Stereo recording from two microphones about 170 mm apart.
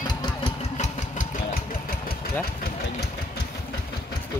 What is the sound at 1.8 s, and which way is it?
Engine, 60° left (ahead or behind).